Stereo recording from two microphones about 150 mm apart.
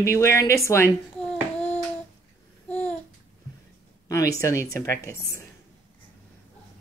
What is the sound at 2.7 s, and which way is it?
Babbling, 10° left (ahead or behind).